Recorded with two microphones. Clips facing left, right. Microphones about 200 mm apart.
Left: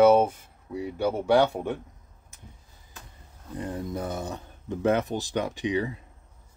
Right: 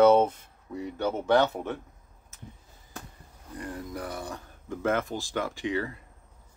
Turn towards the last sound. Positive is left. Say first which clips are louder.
# left 3 dB
turn(degrees=15)  # may be behind; listen again after turning